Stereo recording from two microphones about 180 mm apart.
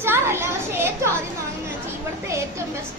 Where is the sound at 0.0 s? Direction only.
15° right (ahead or behind).